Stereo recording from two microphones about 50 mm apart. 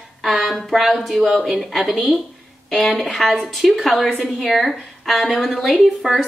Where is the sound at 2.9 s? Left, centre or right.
Centre.